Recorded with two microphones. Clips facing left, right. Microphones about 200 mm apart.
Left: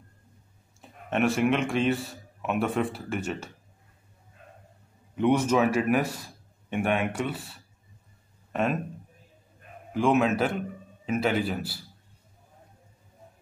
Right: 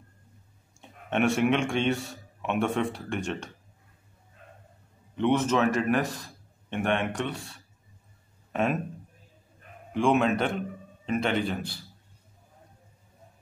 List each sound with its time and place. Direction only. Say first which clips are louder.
0.7 s a man's voice: even; centre (ahead or behind)
5.1 s a man's voice: left 2 dB; 10° left (ahead or behind)
9.9 s a man's voice: left 1 dB; centre (ahead or behind)